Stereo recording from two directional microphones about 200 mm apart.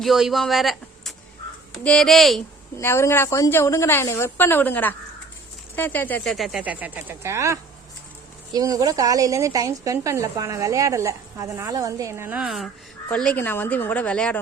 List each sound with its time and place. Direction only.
0.0 s speech: centre (ahead or behind)
2.7 s a woman's voice: 15° left (ahead or behind); by 12.6 s 5° right (ahead or behind)
13.1 s a woman's voice: 5° left (ahead or behind)